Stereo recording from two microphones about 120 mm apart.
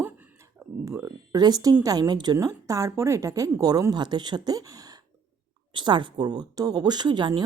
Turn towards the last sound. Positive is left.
turn(degrees=-40)  # may be behind; listen again after turning